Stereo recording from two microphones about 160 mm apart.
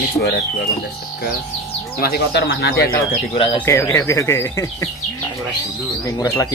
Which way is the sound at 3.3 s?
35° left (ahead or behind).